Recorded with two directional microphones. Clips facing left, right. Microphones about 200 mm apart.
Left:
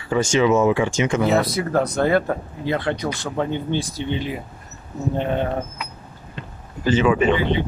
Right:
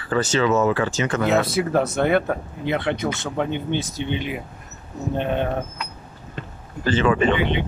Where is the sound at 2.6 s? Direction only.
25° right (ahead or behind).